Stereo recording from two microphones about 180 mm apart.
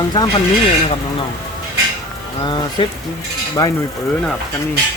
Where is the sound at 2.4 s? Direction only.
25° left (ahead or behind).